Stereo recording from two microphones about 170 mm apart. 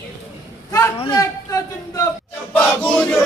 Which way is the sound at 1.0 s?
20° left (ahead or behind).